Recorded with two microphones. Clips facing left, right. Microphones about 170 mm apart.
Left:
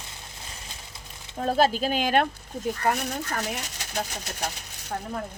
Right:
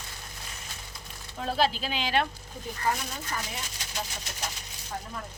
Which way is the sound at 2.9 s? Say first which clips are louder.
Left 2 dB; 65° left (ahead or behind).